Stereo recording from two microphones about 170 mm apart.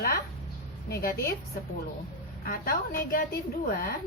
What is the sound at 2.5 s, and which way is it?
Speech, 55° left (ahead or behind).